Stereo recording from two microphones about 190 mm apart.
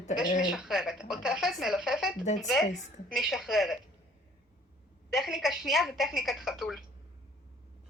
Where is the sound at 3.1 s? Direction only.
Centre (ahead or behind).